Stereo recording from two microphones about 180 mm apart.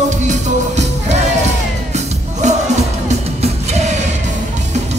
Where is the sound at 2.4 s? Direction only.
40° right (ahead or behind).